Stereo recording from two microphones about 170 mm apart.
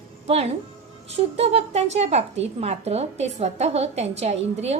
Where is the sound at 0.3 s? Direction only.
35° right (ahead or behind).